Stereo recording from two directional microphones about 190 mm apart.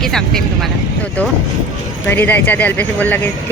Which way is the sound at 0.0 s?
Centre (ahead or behind).